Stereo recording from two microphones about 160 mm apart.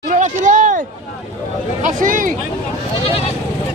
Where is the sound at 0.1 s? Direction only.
50° right (ahead or behind).